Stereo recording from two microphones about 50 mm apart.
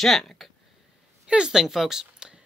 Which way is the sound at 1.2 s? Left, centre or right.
Centre.